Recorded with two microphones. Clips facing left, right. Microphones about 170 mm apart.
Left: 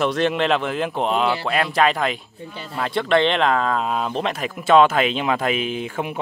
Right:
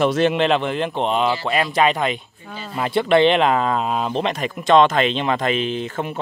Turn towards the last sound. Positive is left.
turn(degrees=10)  # may be behind; listen again after turning